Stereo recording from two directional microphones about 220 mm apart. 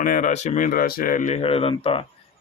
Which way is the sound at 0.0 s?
35° left (ahead or behind).